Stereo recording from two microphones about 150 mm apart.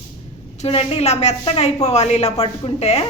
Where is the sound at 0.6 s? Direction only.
40° left (ahead or behind).